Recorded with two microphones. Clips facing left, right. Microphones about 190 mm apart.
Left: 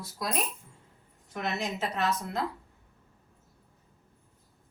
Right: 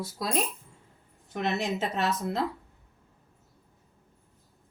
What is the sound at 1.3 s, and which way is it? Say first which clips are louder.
Speech: right 4 dB; 30° right (ahead or behind).